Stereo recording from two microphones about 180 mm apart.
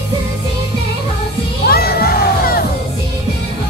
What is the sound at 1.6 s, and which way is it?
Music, 60° left (ahead or behind).